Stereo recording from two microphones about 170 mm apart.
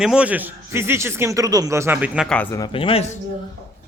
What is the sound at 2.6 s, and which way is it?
Speech, 30° left (ahead or behind).